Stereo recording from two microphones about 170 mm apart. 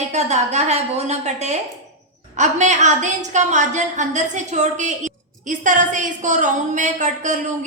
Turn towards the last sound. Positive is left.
turn(degrees=-45)  # may be behind; listen again after turning